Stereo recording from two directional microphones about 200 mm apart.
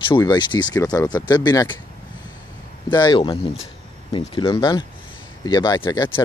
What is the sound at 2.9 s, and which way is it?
Speech, 20° left (ahead or behind).